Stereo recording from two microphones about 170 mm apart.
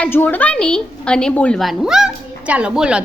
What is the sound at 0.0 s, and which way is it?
A woman's voice, 10° left (ahead or behind).